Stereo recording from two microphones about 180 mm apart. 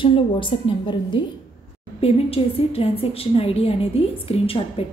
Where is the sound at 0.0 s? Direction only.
30° left (ahead or behind).